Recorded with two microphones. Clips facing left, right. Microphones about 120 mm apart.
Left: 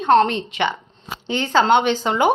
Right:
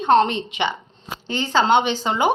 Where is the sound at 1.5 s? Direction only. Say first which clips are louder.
Left 2 dB; 10° right (ahead or behind).